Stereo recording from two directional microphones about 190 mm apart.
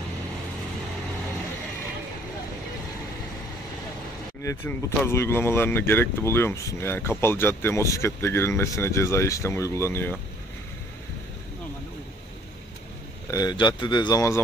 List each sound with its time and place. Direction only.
4.4 s speech: 15° left (ahead or behind)
13.3 s speech: 20° left (ahead or behind)